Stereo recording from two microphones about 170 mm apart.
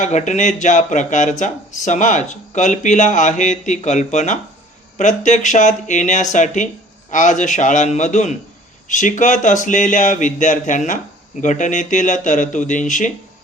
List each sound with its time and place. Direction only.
0.0 s speech: 45° left (ahead or behind)